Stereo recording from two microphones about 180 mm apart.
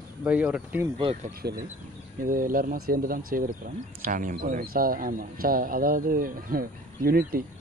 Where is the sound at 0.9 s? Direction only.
35° right (ahead or behind).